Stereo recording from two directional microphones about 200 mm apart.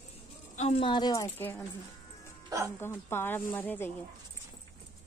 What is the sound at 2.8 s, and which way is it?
Speech, 10° left (ahead or behind).